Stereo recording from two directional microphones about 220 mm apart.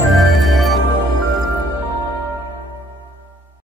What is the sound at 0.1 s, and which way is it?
Music, centre (ahead or behind).